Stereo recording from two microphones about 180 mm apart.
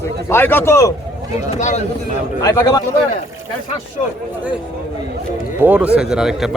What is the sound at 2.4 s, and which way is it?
Speech, 20° left (ahead or behind).